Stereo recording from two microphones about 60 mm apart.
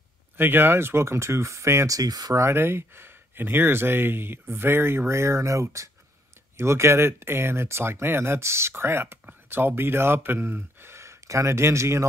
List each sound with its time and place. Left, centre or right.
0.4 s speech: right
1.9 s speech: right
2.4 s speech: right
6.5 s speech: right